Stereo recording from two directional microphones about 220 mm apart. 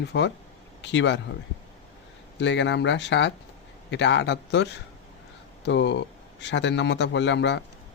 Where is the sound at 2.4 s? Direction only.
55° left (ahead or behind).